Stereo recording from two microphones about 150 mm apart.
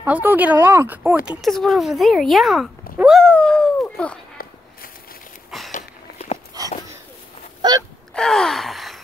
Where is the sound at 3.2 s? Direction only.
5° left (ahead or behind).